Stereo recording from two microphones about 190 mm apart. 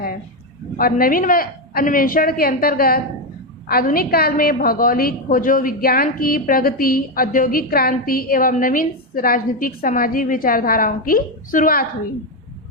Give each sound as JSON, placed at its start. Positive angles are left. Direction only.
{"t": 0.8, "sound": "a woman's voice", "side_deg": 50}